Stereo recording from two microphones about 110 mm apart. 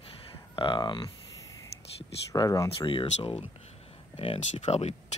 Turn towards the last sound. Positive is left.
turn(degrees=85)